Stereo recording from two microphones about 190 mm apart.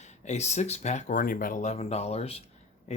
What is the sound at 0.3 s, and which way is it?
Speech, 35° left (ahead or behind).